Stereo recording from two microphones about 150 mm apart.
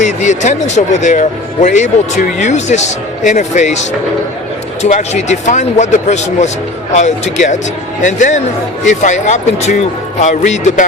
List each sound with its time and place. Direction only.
0.0 s a man's voice: 50° left (ahead or behind)
4.8 s a man's voice: 50° left (ahead or behind)